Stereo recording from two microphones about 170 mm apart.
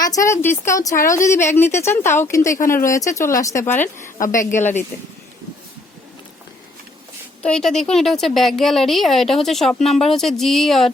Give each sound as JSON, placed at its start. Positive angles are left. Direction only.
{"t": 0.0, "sound": "a woman's voice", "side_deg": 20}
{"t": 7.4, "sound": "a woman's voice", "side_deg": 5}